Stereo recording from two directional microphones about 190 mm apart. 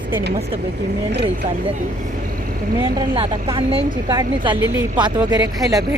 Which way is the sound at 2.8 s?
25° right (ahead or behind).